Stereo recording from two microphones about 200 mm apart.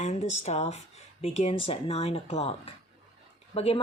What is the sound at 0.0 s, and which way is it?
Speech, 35° left (ahead or behind).